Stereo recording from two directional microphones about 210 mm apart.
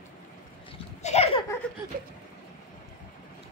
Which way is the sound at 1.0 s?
30° left (ahead or behind).